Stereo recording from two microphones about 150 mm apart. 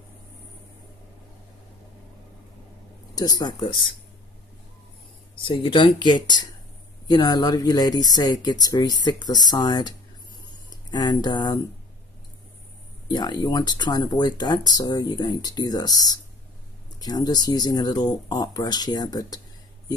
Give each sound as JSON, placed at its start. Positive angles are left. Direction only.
{"t": 3.2, "sound": "speech", "side_deg": 25}
{"t": 5.4, "sound": "speech", "side_deg": 35}
{"t": 13.1, "sound": "speech", "side_deg": 30}